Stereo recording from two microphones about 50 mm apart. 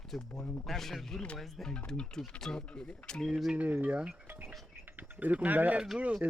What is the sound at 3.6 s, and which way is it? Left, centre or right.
Speech, right.